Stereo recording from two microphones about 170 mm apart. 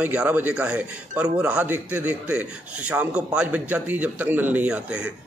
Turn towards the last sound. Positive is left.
turn(degrees=-5)  # may be behind; listen again after turning